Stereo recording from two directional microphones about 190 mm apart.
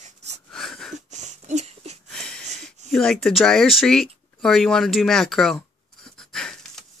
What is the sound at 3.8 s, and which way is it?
Speech, centre (ahead or behind).